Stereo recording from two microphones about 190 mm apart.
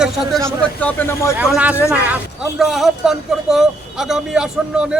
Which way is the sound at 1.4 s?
5° right (ahead or behind).